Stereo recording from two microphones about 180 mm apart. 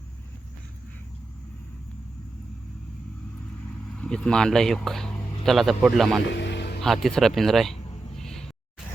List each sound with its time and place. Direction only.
3.9 s speech: 5° left (ahead or behind)
6.2 s music: 75° left (ahead or behind)
6.8 s a sound: centre (ahead or behind)